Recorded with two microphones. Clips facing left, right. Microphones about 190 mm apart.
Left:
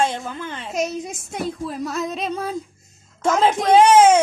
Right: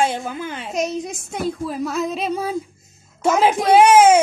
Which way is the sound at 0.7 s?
5° left (ahead or behind).